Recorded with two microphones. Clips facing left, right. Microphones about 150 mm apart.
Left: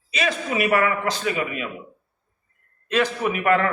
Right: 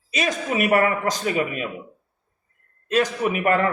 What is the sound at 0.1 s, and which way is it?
A man's voice, 45° right (ahead or behind).